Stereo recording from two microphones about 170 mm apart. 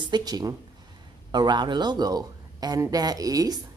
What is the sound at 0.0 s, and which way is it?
Speech, 25° right (ahead or behind).